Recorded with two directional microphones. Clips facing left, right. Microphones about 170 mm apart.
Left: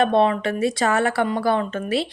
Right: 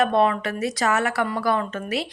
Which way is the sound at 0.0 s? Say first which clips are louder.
Left 2 dB; 25° left (ahead or behind).